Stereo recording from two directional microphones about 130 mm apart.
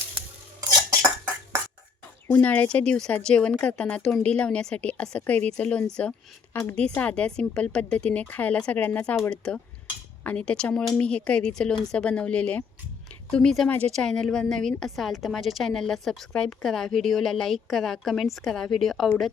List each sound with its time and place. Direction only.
2.3 s a woman's voice: 10° left (ahead or behind)